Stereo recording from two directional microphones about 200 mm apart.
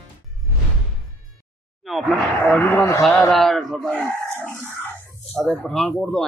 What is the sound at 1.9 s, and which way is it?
Speech, centre (ahead or behind).